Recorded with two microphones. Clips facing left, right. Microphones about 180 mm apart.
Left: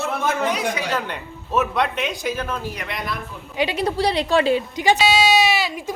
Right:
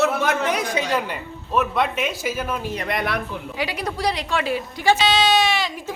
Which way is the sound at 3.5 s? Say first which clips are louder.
Left 7 dB; 25° left (ahead or behind).